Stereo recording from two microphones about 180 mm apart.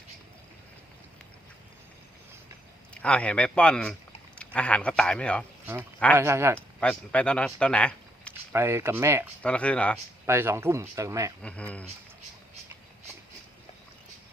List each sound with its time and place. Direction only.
2.9 s speech: 5° left (ahead or behind)
6.1 s speech: 15° right (ahead or behind)
6.7 s speech: 5° left (ahead or behind)
8.5 s speech: 15° right (ahead or behind)
9.4 s speech: 5° left (ahead or behind)
10.2 s speech: 15° right (ahead or behind)
11.4 s speech: 5° left (ahead or behind)